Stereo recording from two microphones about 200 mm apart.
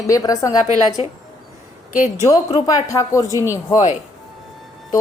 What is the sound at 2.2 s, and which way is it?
Speech, 15° left (ahead or behind).